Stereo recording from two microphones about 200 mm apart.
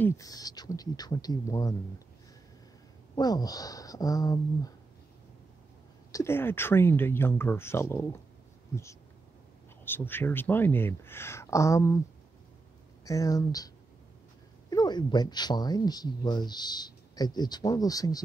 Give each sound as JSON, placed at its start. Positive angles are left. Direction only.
{"t": 0.0, "sound": "speech", "side_deg": 15}
{"t": 3.2, "sound": "speech", "side_deg": 20}
{"t": 6.1, "sound": "speech", "side_deg": 10}
{"t": 9.8, "sound": "speech", "side_deg": 10}
{"t": 13.0, "sound": "speech", "side_deg": 15}
{"t": 14.7, "sound": "speech", "side_deg": 20}